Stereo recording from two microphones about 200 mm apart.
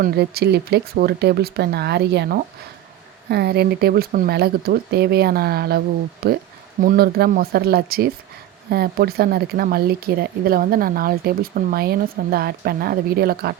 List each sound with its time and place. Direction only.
0.0 s speech: 55° right (ahead or behind)